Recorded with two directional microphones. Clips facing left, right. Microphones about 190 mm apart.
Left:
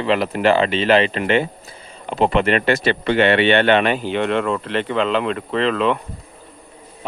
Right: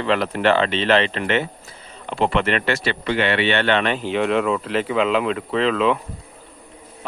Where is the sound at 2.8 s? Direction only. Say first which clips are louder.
Left 5 dB; 50° left (ahead or behind).